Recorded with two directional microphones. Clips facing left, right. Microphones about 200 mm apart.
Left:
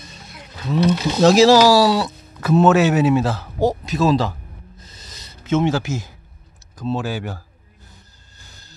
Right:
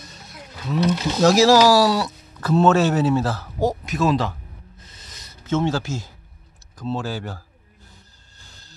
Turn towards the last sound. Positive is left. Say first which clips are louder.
# left 3 dB
turn(degrees=15)  # may be behind; listen again after turning